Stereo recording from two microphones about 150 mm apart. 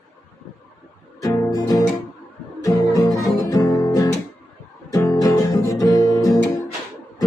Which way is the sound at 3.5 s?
20° left (ahead or behind).